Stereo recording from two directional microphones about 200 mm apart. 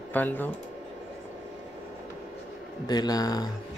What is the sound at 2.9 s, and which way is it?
Speech, 20° left (ahead or behind).